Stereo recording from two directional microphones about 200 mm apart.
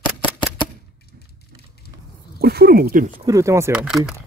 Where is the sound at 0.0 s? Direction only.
25° left (ahead or behind).